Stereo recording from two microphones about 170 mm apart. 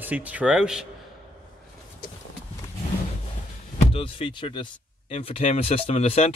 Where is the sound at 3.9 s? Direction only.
30° left (ahead or behind).